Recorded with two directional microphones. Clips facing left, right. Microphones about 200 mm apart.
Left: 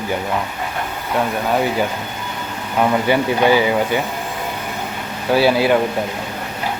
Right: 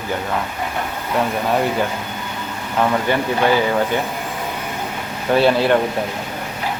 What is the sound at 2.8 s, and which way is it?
Speech, 10° left (ahead or behind).